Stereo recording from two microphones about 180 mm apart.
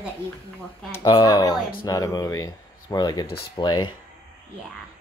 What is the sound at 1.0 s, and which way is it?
Speech, 25° left (ahead or behind).